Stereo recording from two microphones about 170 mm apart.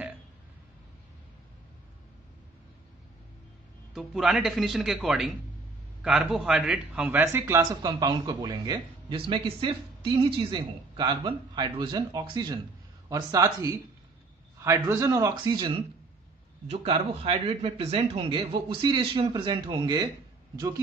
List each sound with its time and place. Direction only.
3.9 s a man's voice: centre (ahead or behind); by 20.8 s 20° right (ahead or behind)